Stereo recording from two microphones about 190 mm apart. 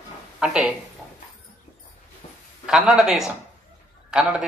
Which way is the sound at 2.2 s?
40° left (ahead or behind).